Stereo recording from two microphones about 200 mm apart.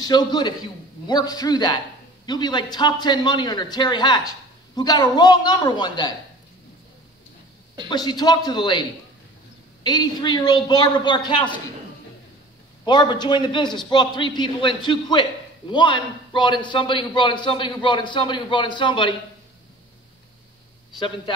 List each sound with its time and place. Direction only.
0.0 s a man's voice: 20° left (ahead or behind)
7.9 s a man's voice: 20° left (ahead or behind)
9.8 s a man's voice: 20° left (ahead or behind)
12.8 s a man's voice: 25° left (ahead or behind)